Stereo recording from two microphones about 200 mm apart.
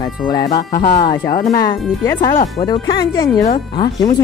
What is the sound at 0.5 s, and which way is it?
Speech, 45° left (ahead or behind).